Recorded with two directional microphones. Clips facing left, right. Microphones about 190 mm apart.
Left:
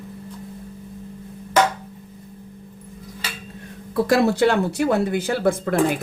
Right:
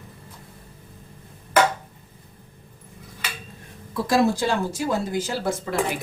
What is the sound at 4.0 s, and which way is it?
Speech, 60° left (ahead or behind).